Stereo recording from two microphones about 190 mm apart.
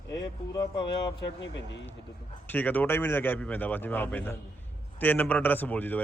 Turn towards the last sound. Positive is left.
turn(degrees=10)  # may be behind; listen again after turning